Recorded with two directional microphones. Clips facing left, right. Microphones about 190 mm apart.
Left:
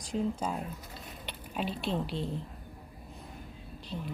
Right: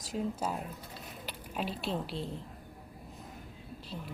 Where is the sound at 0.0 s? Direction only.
5° right (ahead or behind).